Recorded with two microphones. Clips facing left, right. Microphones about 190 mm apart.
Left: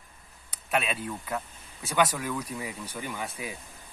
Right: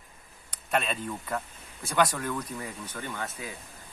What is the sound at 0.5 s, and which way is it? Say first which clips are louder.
Speech: even; 5° left (ahead or behind).